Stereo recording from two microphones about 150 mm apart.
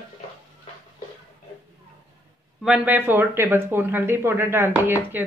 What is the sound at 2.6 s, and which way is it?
Speech, 10° right (ahead or behind).